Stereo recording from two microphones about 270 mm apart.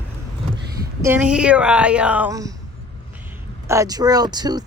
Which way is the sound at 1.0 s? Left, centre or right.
Centre.